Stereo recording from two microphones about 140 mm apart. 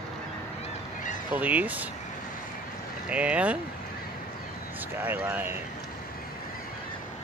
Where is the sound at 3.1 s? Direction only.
10° right (ahead or behind).